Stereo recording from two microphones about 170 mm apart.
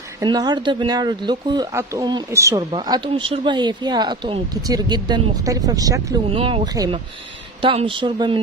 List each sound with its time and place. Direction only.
0.2 s speech: 25° right (ahead or behind)
6.2 s speech: 35° right (ahead or behind)